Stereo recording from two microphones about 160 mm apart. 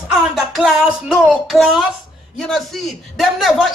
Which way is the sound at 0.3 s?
Centre (ahead or behind).